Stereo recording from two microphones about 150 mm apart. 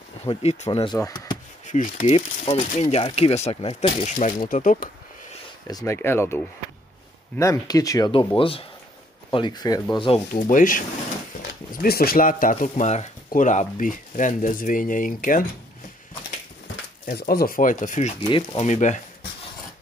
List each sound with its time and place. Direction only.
0.2 s speech: 45° left (ahead or behind)
0.7 s speech: 30° left (ahead or behind)
1.7 s speech: 55° left (ahead or behind)
2.1 s speech: 40° left (ahead or behind)
4.5 s speech: 65° left (ahead or behind)
5.7 s speech: 25° left (ahead or behind)
8.4 s speech: 35° left (ahead or behind)
10.3 s speech: 65° left (ahead or behind)
11.7 s speech: 80° left; by 15.4 s 65° left (ahead or behind)
17.0 s speech: 75° left (ahead or behind); by 18.1 s 55° left (ahead or behind)
18.3 s speech: 35° left (ahead or behind)
18.7 s speech: 55° left (ahead or behind)